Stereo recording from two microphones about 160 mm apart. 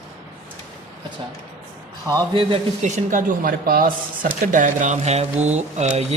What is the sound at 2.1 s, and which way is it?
Speech, 25° right (ahead or behind).